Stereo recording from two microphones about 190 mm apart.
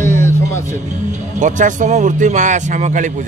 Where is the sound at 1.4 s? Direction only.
40° right (ahead or behind).